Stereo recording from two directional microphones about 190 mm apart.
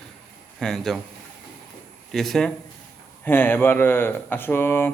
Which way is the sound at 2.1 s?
Centre (ahead or behind).